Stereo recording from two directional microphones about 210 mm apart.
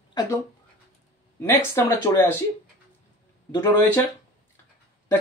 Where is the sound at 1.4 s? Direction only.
10° left (ahead or behind).